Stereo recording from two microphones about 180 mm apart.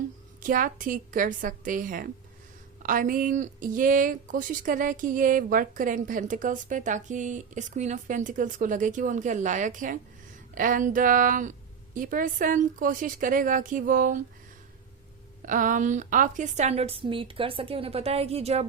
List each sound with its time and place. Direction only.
0.3 s speech: 50° right (ahead or behind)
15.4 s a woman's voice: 45° right (ahead or behind)